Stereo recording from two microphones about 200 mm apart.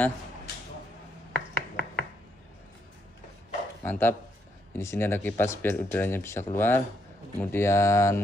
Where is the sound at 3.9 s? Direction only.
10° left (ahead or behind).